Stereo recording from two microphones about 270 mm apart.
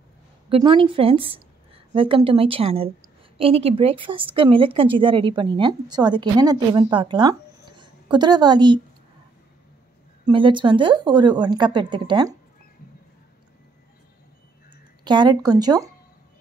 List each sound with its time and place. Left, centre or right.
0.5 s a woman's voice: centre
10.3 s a woman's voice: centre
14.7 s speech: centre